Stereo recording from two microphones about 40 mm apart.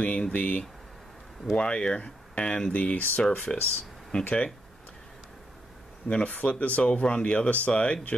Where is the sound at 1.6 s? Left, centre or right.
Left.